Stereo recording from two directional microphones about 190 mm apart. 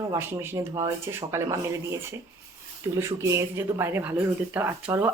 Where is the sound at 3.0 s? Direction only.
15° right (ahead or behind).